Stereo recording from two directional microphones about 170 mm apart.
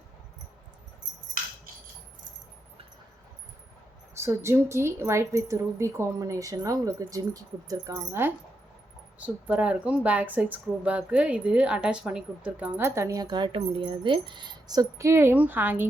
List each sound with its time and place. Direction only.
4.1 s a woman's voice: 15° right (ahead or behind)
13.2 s speech: 30° right (ahead or behind); by 15.9 s 10° right (ahead or behind)